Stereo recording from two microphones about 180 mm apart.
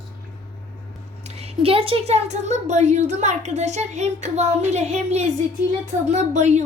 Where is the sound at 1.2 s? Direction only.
35° right (ahead or behind).